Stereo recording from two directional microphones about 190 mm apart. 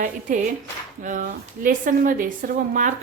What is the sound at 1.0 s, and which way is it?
A woman's voice, 45° right (ahead or behind).